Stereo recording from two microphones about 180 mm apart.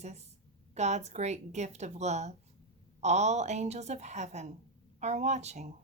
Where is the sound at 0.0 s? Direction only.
35° right (ahead or behind).